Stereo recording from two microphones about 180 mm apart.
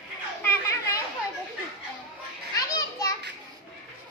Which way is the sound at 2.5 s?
20° left (ahead or behind).